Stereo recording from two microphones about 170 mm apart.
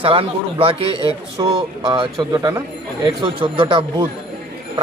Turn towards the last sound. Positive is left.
turn(degrees=-30)  # may be behind; listen again after turning